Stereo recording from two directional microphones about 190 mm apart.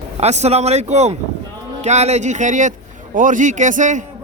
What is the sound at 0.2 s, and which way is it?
Speech, 35° right (ahead or behind).